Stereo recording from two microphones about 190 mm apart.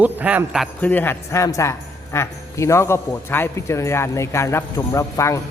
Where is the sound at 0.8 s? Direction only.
10° left (ahead or behind).